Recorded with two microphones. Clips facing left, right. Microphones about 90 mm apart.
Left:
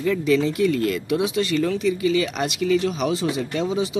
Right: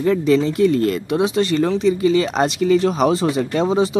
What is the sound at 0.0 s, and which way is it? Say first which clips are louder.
Speech: right 4 dB; 35° right (ahead or behind).